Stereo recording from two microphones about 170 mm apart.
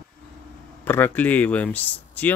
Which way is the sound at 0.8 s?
10° left (ahead or behind).